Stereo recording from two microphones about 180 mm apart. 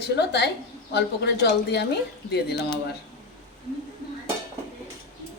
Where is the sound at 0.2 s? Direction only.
70° left (ahead or behind).